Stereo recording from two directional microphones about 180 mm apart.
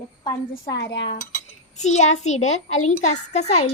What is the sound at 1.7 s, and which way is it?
A child's voice, 40° left (ahead or behind).